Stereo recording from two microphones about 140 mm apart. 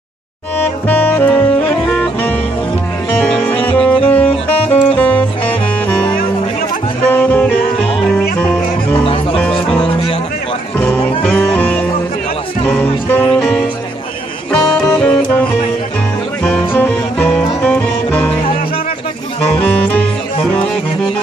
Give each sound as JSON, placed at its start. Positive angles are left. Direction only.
{"t": 0.6, "sound": "saxophone", "side_deg": 10}
{"t": 3.3, "sound": "music", "side_deg": 10}
{"t": 9.0, "sound": "music", "side_deg": 40}
{"t": 11.2, "sound": "music", "side_deg": 15}
{"t": 13.4, "sound": "music", "side_deg": -5}
{"t": 15.0, "sound": "music", "side_deg": 5}
{"t": 16.4, "sound": "music", "side_deg": 15}
{"t": 19.6, "sound": "music", "side_deg": 10}